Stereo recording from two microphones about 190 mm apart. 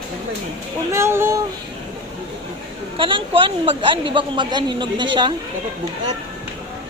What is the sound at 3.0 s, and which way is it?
Speech, 25° right (ahead or behind).